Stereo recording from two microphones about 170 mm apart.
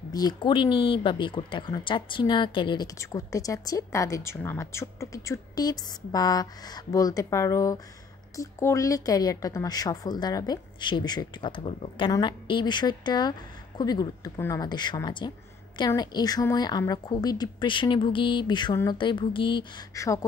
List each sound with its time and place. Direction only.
0.1 s speech: 25° left (ahead or behind)
19.9 s speech: 20° left (ahead or behind)